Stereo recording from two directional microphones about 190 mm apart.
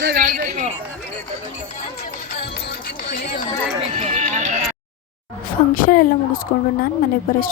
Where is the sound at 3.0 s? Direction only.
45° left (ahead or behind).